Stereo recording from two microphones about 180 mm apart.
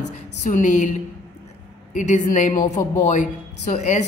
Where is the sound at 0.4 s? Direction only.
45° left (ahead or behind).